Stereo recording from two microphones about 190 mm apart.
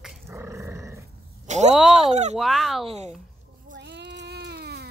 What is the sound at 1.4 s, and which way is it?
Speech, 35° right (ahead or behind).